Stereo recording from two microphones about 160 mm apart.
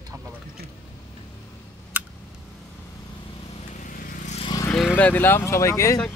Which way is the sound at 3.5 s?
50° left (ahead or behind).